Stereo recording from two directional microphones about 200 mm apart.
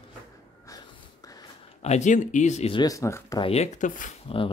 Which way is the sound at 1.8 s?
35° left (ahead or behind).